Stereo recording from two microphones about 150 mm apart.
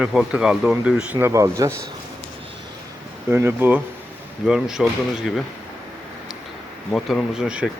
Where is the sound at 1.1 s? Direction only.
20° right (ahead or behind).